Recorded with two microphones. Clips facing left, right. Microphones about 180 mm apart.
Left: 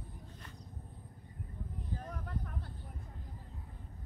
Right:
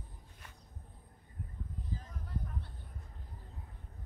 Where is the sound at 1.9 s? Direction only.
60° left (ahead or behind).